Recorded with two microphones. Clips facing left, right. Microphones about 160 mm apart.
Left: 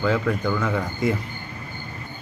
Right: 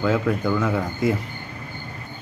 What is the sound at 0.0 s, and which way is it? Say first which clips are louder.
A man's voice: right 1 dB; 5° right (ahead or behind).